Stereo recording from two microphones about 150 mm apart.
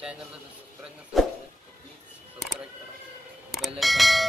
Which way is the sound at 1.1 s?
Centre (ahead or behind).